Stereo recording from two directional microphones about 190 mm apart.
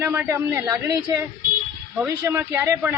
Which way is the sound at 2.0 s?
10° right (ahead or behind).